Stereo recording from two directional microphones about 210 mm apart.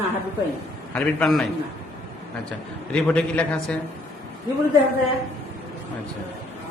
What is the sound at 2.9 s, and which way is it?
Speech, 5° left (ahead or behind).